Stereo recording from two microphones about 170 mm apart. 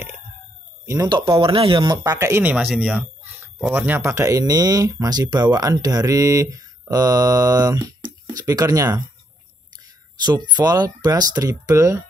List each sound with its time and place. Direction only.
0.8 s speech: 20° right (ahead or behind)
10.1 s speech: 25° right (ahead or behind)